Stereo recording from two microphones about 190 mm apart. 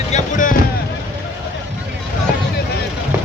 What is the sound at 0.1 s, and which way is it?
Boat, 45° left (ahead or behind).